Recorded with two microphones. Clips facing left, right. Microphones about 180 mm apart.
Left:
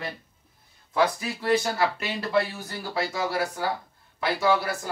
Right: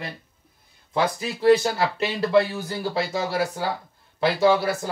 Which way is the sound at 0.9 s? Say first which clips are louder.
Even; 30° right (ahead or behind).